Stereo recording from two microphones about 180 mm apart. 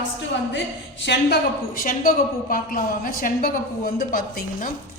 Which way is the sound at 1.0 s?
70° left (ahead or behind).